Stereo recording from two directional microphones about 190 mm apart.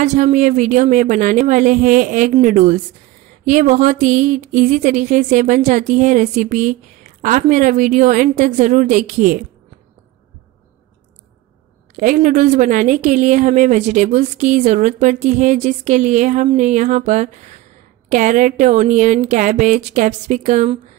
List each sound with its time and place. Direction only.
0.0 s speech: 40° right (ahead or behind)
12.0 s speech: 40° right (ahead or behind)